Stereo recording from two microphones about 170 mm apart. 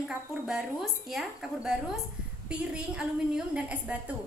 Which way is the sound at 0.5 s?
Centre (ahead or behind).